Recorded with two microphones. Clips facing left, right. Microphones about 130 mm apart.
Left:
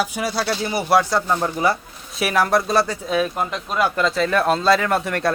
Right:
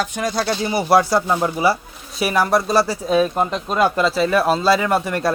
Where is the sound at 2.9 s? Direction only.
25° right (ahead or behind).